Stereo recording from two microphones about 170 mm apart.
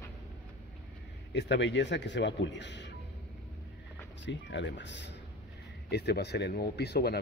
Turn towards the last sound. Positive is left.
turn(degrees=75)  # may be behind; listen again after turning